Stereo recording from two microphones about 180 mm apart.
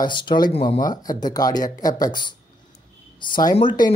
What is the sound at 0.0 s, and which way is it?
Speech, 25° left (ahead or behind).